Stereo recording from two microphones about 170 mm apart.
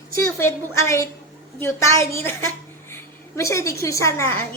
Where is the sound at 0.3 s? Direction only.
15° left (ahead or behind).